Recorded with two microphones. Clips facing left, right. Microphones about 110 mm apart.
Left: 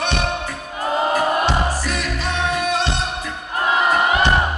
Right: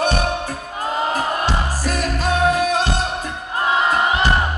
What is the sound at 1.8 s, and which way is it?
Music, 40° right (ahead or behind).